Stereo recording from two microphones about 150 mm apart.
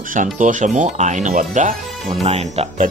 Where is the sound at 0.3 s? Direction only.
55° right (ahead or behind).